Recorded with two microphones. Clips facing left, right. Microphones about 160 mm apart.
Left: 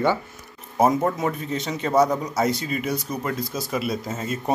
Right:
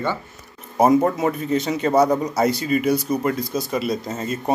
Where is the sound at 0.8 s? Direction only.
Centre (ahead or behind).